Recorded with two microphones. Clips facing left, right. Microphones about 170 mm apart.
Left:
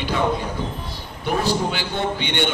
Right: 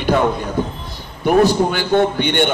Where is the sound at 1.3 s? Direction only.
55° right (ahead or behind).